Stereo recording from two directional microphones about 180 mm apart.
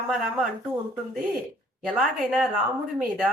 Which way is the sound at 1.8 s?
Centre (ahead or behind).